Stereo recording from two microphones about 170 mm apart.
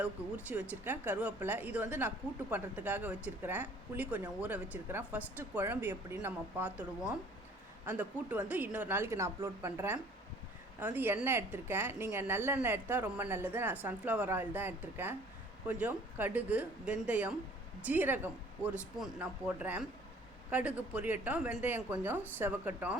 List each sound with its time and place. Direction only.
0.0 s speech: 10° right (ahead or behind)
7.9 s speech: 10° right (ahead or behind)